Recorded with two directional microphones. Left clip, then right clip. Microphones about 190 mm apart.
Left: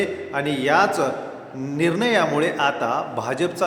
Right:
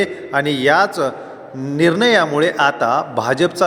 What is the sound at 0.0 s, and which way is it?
A man's voice, 40° right (ahead or behind).